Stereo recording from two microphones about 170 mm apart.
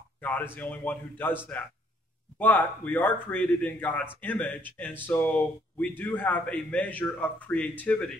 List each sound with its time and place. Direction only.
0.2 s a man's voice: 10° left (ahead or behind)